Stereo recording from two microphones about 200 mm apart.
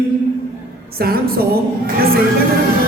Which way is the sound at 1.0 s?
50° right (ahead or behind).